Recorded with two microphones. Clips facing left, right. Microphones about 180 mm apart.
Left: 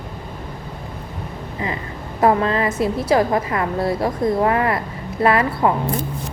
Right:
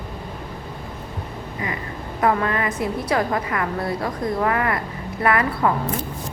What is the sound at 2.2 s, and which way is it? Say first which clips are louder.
A woman's voice: left 4 dB; 25° left (ahead or behind).